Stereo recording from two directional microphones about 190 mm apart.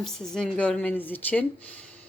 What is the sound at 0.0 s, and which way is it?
A woman's voice, 5° left (ahead or behind).